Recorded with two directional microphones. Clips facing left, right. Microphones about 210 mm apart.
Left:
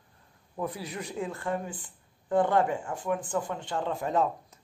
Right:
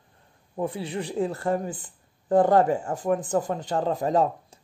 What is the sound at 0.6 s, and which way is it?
Speech, 30° right (ahead or behind).